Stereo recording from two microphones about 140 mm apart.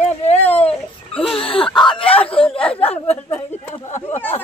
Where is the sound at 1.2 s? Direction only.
40° left (ahead or behind).